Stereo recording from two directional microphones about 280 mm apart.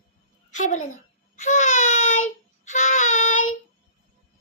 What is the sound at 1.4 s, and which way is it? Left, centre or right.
Child singing, left.